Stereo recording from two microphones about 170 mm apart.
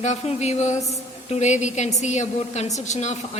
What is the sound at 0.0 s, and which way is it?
A woman's voice, 40° left (ahead or behind).